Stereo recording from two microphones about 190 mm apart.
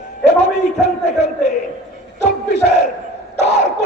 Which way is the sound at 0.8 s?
35° left (ahead or behind).